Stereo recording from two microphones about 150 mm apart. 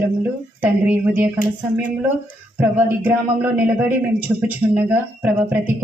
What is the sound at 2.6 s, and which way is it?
Speech, 10° right (ahead or behind).